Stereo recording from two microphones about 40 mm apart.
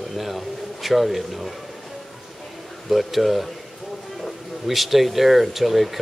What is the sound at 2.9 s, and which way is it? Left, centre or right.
Speech, centre.